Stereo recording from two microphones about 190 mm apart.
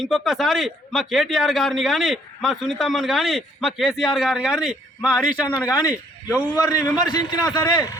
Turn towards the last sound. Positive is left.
turn(degrees=20)  # may be behind; listen again after turning